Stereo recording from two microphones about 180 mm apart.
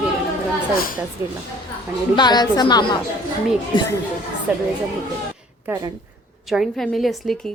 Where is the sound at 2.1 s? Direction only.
25° left (ahead or behind).